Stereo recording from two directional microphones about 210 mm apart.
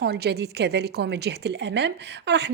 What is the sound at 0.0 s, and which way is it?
A woman's voice, 50° right (ahead or behind).